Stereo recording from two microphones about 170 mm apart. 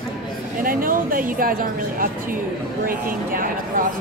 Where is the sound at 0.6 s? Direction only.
55° right (ahead or behind).